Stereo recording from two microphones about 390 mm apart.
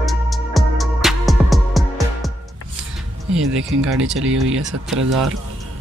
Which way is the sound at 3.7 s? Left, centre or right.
Right.